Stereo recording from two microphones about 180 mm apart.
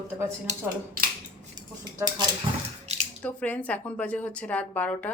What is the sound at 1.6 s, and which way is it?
Speech, 20° right (ahead or behind).